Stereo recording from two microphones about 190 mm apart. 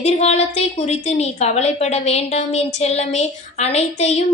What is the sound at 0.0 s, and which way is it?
A woman's voice, 35° left (ahead or behind).